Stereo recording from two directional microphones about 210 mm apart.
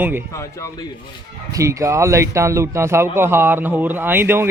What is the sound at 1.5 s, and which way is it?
A man's voice, 15° right (ahead or behind).